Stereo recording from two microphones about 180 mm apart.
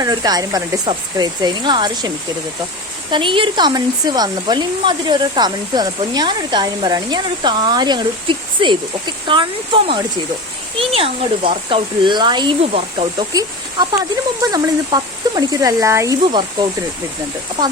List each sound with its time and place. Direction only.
0.0 s speech: 20° right (ahead or behind)
3.1 s speech: 30° right (ahead or behind)